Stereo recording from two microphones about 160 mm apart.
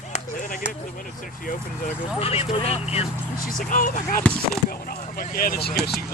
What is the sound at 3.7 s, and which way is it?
Speech, 55° left (ahead or behind).